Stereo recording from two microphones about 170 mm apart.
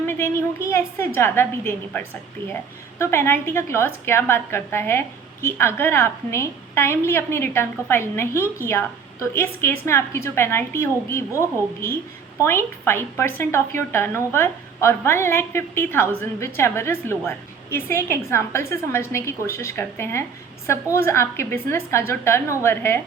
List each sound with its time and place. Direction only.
0.0 s a woman's voice: 15° left (ahead or behind)